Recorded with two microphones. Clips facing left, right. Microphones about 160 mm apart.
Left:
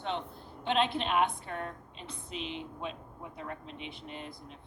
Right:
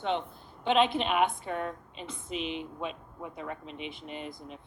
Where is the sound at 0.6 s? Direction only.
75° right (ahead or behind).